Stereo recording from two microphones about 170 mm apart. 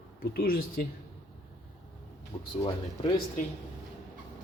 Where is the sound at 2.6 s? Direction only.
30° left (ahead or behind).